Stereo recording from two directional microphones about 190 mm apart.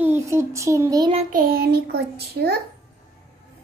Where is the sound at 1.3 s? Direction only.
50° right (ahead or behind).